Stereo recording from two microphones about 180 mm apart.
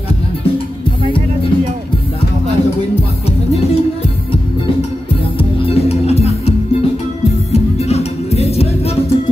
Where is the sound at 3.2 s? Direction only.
35° left (ahead or behind).